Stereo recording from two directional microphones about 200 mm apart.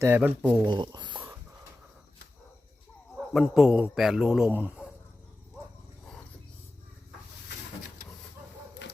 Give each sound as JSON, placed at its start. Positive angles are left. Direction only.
{"t": 0.0, "sound": "speech", "side_deg": -10}
{"t": 0.6, "sound": "speech", "side_deg": -20}
{"t": 3.2, "sound": "a man's voice", "side_deg": 0}
{"t": 8.8, "sound": "run", "side_deg": 60}